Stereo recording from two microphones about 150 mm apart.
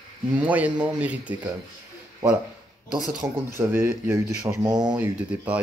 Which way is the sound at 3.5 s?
15° right (ahead or behind).